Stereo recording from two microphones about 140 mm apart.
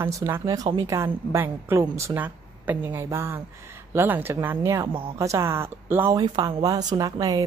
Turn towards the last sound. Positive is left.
turn(degrees=-25)  # may be behind; listen again after turning